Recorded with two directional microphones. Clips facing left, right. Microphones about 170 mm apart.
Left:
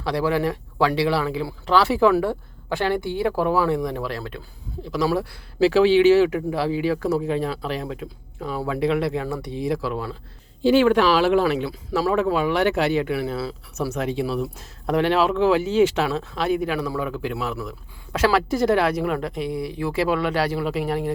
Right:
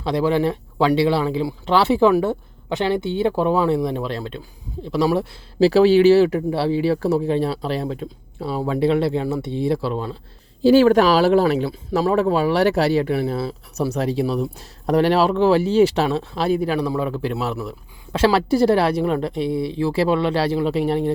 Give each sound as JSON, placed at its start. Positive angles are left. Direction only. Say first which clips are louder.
{"t": 0.0, "sound": "speech", "louder": "right 3 dB", "side_deg": -25}